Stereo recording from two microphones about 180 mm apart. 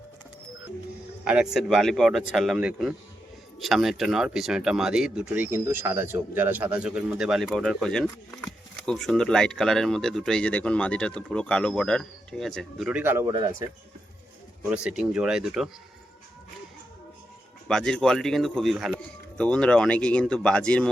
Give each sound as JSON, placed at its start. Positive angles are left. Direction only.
{"t": 1.2, "sound": "speech", "side_deg": -5}
{"t": 13.2, "sound": "speech", "side_deg": -20}
{"t": 14.6, "sound": "speech", "side_deg": -5}
{"t": 17.7, "sound": "speech", "side_deg": 5}